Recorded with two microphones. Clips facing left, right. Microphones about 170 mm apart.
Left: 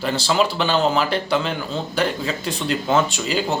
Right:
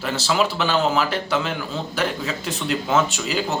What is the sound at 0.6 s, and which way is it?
A man's voice, centre (ahead or behind).